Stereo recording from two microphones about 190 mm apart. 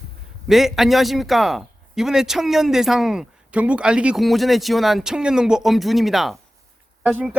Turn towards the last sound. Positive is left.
turn(degrees=-5)  # may be behind; listen again after turning